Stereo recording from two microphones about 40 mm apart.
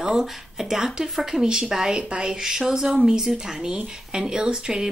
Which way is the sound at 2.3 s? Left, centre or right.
Centre.